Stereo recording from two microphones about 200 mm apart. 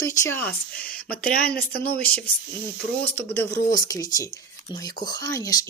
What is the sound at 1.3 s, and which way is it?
Speech, 50° left (ahead or behind).